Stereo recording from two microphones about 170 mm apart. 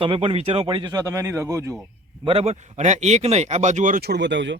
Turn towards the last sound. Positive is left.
turn(degrees=-90)